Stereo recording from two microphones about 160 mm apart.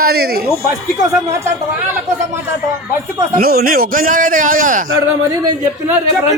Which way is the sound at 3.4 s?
70° right (ahead or behind).